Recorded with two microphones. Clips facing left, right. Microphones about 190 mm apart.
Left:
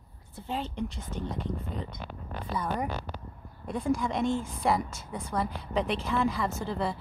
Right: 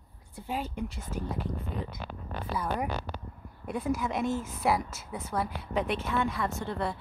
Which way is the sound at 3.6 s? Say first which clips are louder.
Left 2 dB; 5° right (ahead or behind).